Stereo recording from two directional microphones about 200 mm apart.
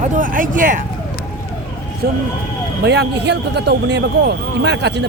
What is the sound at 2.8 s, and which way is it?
Speech, 55° right (ahead or behind).